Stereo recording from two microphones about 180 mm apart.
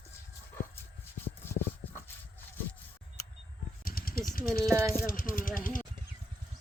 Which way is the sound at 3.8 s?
55° left (ahead or behind).